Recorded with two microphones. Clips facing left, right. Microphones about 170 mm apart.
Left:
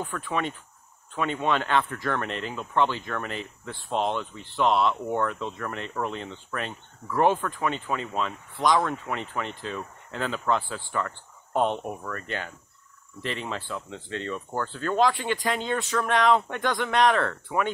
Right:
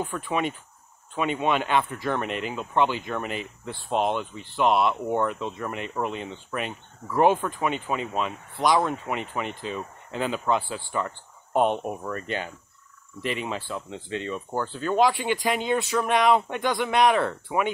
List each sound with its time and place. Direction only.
0.0 s speech: 15° right (ahead or behind)